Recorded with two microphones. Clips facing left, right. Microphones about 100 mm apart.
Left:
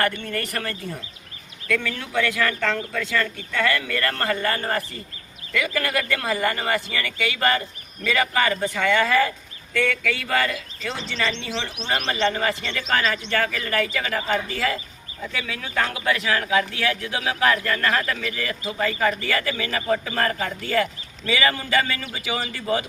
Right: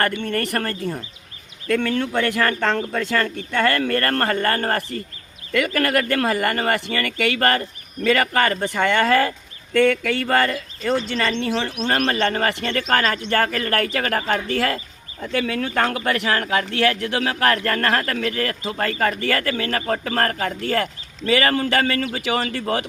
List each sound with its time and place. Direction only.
0.2 s speech: 55° right (ahead or behind)
2.0 s speech: 50° right (ahead or behind)